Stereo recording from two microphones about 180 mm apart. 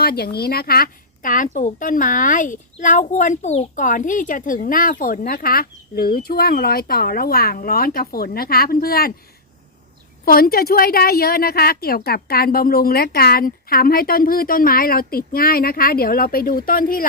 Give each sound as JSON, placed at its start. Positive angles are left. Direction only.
{"t": 0.0, "sound": "speech", "side_deg": 60}
{"t": 10.2, "sound": "speech", "side_deg": 55}